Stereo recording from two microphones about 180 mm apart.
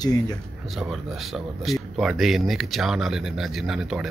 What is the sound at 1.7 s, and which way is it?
Speech, centre (ahead or behind).